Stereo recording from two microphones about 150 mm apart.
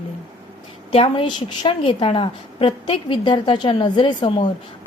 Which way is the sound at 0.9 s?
40° left (ahead or behind).